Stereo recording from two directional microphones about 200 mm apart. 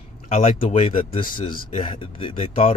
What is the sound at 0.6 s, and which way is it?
Speech, 40° left (ahead or behind).